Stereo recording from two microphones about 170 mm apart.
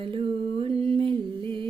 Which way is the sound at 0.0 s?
30° right (ahead or behind).